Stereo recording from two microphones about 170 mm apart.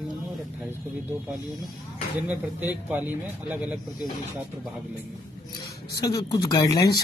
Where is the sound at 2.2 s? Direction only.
10° right (ahead or behind).